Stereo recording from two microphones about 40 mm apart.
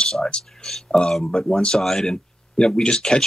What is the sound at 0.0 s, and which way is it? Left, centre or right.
Speech, centre.